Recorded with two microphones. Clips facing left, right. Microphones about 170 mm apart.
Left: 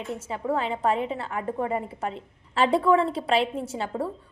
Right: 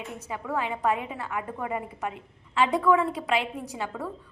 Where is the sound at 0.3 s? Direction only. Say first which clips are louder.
Left 3 dB; 30° left (ahead or behind).